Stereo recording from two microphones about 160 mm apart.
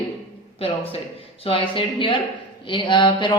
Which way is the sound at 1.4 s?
35° left (ahead or behind).